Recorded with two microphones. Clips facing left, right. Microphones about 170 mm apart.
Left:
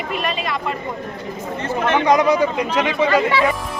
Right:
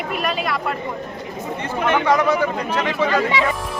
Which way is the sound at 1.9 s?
15° left (ahead or behind).